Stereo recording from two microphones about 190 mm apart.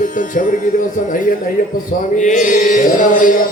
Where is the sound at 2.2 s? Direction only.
40° left (ahead or behind).